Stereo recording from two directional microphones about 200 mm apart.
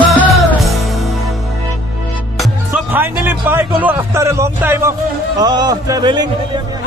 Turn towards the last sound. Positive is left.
turn(degrees=-20)  # may be behind; listen again after turning